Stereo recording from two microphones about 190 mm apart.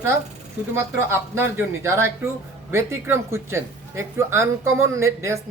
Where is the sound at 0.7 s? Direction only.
10° right (ahead or behind).